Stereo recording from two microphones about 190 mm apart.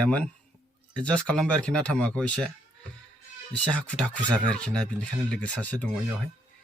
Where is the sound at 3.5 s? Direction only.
5° left (ahead or behind).